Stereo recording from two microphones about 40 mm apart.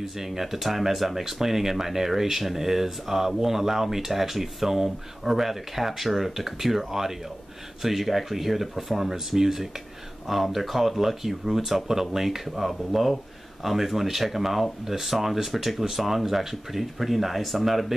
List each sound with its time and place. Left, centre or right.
0.0 s speech: centre